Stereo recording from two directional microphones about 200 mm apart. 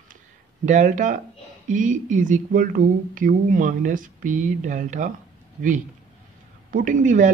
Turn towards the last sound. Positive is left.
turn(degrees=-40)  # may be behind; listen again after turning